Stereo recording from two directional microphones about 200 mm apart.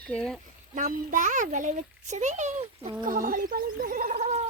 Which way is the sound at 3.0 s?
45° right (ahead or behind).